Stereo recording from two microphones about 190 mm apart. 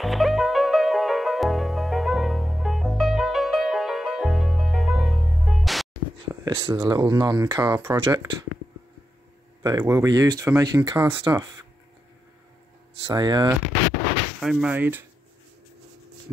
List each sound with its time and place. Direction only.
0.0 s music: centre (ahead or behind)
6.4 s speech: 20° right (ahead or behind)
9.6 s speech: 20° right (ahead or behind)
13.0 s speech: 20° right (ahead or behind)
14.4 s speech: centre (ahead or behind)